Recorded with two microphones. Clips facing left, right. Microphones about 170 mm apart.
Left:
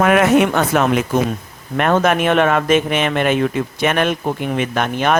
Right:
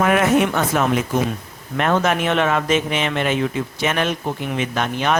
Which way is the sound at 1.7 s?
55° left (ahead or behind).